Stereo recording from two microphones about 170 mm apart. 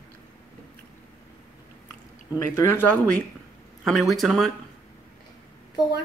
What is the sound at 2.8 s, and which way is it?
Speech, 10° left (ahead or behind).